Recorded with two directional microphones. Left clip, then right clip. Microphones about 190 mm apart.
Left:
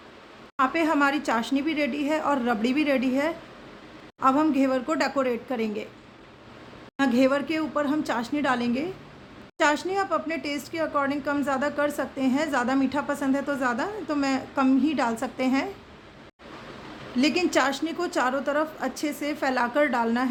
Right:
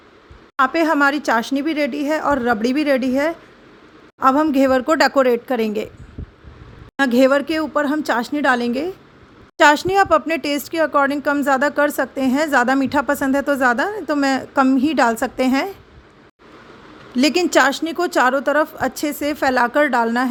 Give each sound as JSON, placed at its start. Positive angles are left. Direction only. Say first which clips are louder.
{"t": 0.5, "sound": "speech", "louder": "right 7 dB", "side_deg": -35}
{"t": 6.9, "sound": "speech", "louder": "right 8 dB", "side_deg": -40}
{"t": 17.2, "sound": "speech", "louder": "right 8 dB", "side_deg": -45}